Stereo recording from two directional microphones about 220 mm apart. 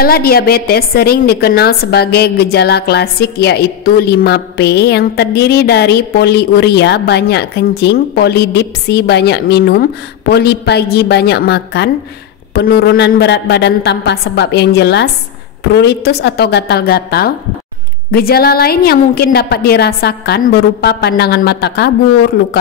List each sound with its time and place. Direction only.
0.0 s a woman's voice: 45° left (ahead or behind)